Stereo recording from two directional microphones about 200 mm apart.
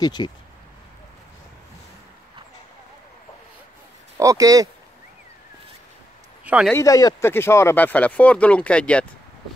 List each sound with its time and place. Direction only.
0.0 s speech: 20° left (ahead or behind)
4.2 s speech: 15° right (ahead or behind)
6.4 s speech: 5° right (ahead or behind)
6.7 s speech: 15° left (ahead or behind)